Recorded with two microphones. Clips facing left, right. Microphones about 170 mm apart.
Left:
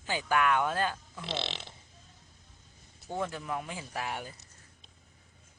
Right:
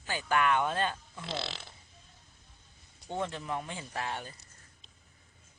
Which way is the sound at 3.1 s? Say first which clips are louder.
Even; 5° left (ahead or behind).